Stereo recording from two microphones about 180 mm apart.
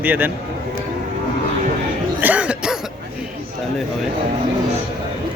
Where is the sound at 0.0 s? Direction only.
10° right (ahead or behind).